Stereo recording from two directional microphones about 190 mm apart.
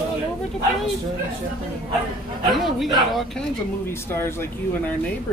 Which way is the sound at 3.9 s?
15° left (ahead or behind).